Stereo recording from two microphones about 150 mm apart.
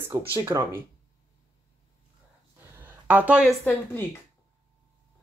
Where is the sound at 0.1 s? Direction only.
25° right (ahead or behind).